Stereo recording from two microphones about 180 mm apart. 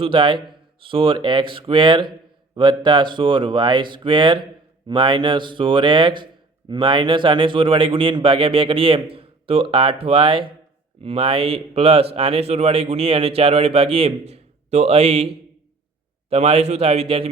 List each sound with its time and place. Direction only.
0.0 s a man's voice: 30° right (ahead or behind)
16.3 s a man's voice: 35° right (ahead or behind)